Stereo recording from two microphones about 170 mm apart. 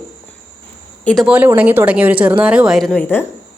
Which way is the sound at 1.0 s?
Centre (ahead or behind).